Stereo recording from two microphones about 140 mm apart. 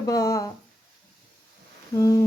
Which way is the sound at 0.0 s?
25° left (ahead or behind).